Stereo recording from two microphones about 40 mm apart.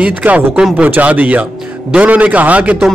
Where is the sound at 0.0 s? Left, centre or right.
Right.